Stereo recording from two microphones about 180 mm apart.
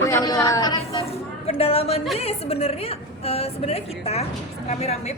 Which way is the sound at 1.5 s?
35° left (ahead or behind).